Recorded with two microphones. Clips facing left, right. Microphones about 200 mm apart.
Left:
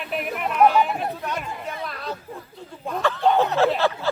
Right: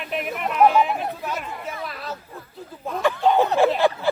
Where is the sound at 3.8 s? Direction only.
15° right (ahead or behind).